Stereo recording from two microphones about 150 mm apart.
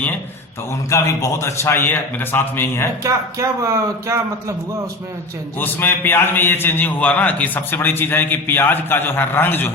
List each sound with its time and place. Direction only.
0.9 s a man's voice: 20° left (ahead or behind)
3.0 s a man's voice: 20° right (ahead or behind)
5.5 s a man's voice: 15° left (ahead or behind)